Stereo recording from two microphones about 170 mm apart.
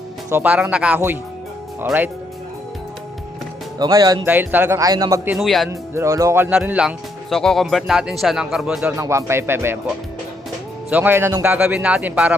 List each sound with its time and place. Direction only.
0.3 s speech: 10° right (ahead or behind)
3.8 s speech: 20° right (ahead or behind)
4.3 s speech: 10° right (ahead or behind)
5.3 s speech: centre (ahead or behind)
5.9 s speech: 15° right (ahead or behind)
9.0 s speech: 15° right (ahead or behind)
10.8 s speech: 10° right (ahead or behind)